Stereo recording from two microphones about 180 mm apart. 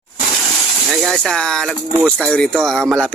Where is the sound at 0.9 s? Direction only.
Centre (ahead or behind).